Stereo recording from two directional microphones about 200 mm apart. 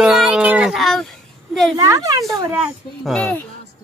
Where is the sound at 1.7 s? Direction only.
15° right (ahead or behind).